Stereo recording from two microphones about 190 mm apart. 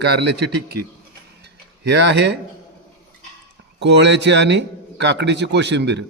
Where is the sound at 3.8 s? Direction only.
65° right (ahead or behind).